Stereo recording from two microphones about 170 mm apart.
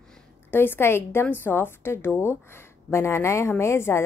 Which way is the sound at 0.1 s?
10° left (ahead or behind).